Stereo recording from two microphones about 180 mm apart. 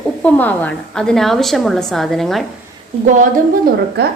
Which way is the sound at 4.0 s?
70° right (ahead or behind).